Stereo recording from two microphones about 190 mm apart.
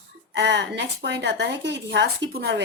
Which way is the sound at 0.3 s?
65° right (ahead or behind).